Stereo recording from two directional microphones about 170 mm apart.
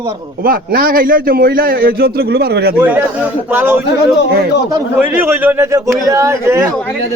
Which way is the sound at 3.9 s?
90° left.